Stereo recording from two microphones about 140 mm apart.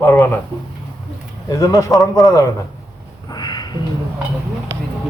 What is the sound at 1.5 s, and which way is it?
Speech, 25° left (ahead or behind).